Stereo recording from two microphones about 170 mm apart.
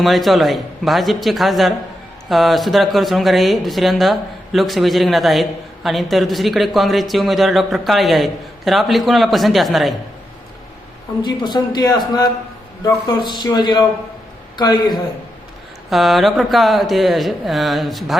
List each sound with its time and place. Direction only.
0.0 s speech: centre (ahead or behind)
11.2 s a man's voice: 25° left (ahead or behind)
15.9 s speech: centre (ahead or behind)